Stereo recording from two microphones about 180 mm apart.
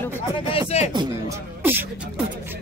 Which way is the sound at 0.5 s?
35° left (ahead or behind).